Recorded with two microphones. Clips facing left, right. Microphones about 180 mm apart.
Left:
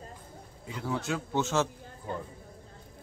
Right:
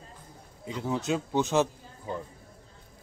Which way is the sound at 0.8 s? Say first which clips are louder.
Right 3 dB; 20° right (ahead or behind).